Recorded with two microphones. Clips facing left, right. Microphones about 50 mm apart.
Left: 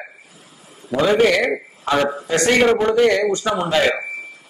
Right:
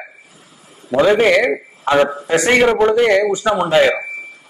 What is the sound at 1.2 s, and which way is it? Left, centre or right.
A man's voice, right.